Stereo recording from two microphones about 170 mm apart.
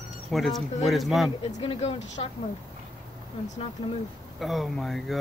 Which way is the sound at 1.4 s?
35° left (ahead or behind).